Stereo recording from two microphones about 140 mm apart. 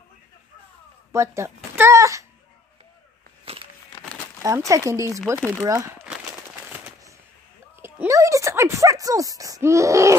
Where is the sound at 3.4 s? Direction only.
40° right (ahead or behind).